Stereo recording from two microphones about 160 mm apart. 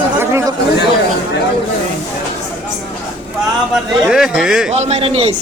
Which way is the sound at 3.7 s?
5° right (ahead or behind).